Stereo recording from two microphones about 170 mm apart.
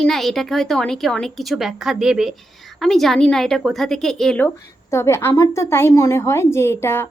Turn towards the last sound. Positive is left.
turn(degrees=15)  # may be behind; listen again after turning